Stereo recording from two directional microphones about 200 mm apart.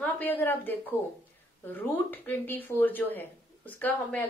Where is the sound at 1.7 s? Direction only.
10° left (ahead or behind).